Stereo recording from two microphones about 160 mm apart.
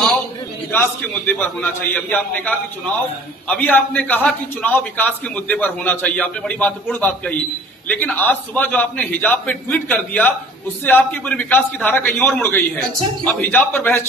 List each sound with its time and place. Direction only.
0.7 s a man's voice: 10° left (ahead or behind)